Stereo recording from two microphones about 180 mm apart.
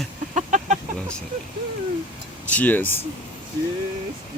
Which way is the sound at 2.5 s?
10° left (ahead or behind).